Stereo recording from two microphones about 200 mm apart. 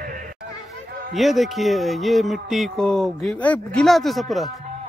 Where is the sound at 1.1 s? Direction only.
Centre (ahead or behind).